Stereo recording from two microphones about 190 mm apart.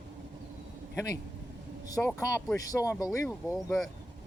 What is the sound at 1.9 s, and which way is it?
Speech, 15° left (ahead or behind).